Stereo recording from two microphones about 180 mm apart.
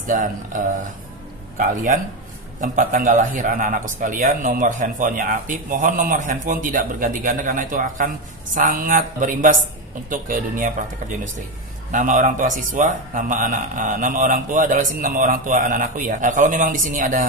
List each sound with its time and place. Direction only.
0.0 s a man's voice: 45° right (ahead or behind)
2.6 s a man's voice: 45° right (ahead or behind)